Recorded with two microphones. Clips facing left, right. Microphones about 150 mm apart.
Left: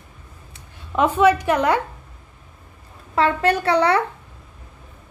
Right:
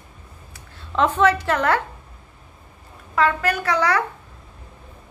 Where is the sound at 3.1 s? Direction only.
30° left (ahead or behind).